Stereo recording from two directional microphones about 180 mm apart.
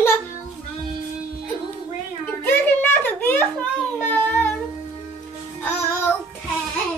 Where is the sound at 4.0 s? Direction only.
10° left (ahead or behind).